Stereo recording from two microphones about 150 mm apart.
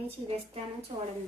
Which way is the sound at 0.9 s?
40° right (ahead or behind).